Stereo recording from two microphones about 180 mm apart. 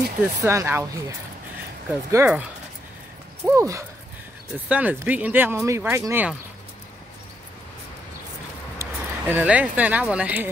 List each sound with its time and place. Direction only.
0.4 s speech: 15° right (ahead or behind)
3.4 s speech: 15° right (ahead or behind)
8.7 s speech: 10° right (ahead or behind)